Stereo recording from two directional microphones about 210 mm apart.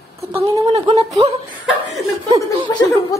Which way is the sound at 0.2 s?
15° right (ahead or behind).